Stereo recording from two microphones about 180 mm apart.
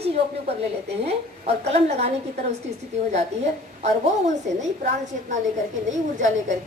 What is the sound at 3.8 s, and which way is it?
Speech, 40° right (ahead or behind).